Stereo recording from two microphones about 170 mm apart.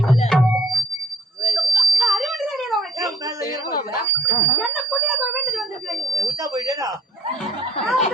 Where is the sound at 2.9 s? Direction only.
20° right (ahead or behind).